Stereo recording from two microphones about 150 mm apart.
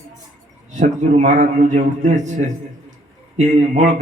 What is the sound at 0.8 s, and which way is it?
A man's voice, 55° right (ahead or behind).